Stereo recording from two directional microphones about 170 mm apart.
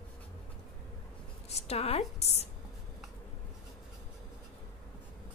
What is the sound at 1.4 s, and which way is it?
A woman's voice, 40° left (ahead or behind).